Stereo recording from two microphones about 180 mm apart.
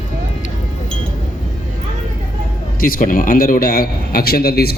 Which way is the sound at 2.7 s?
50° left (ahead or behind).